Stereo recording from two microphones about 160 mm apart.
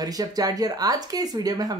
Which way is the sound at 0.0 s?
25° right (ahead or behind).